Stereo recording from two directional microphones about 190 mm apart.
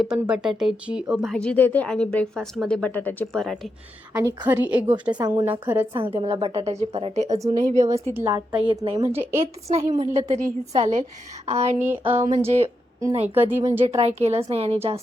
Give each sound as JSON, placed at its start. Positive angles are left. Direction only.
{"t": 0.0, "sound": "speech", "side_deg": -5}
{"t": 4.1, "sound": "a woman's voice", "side_deg": -10}
{"t": 5.9, "sound": "a woman's voice", "side_deg": -25}
{"t": 7.3, "sound": "a woman's voice", "side_deg": -15}
{"t": 7.6, "sound": "a woman's voice", "side_deg": -35}
{"t": 8.1, "sound": "a woman's voice", "side_deg": -15}
{"t": 8.6, "sound": "a woman's voice", "side_deg": -25}
{"t": 9.4, "sound": "a woman's voice", "side_deg": -30}
{"t": 11.8, "sound": "a woman's voice", "side_deg": -10}
{"t": 12.6, "sound": "a sound", "side_deg": -15}
{"t": 13.3, "sound": "a woman's voice", "side_deg": -10}
{"t": 13.8, "sound": "a woman's voice", "side_deg": -35}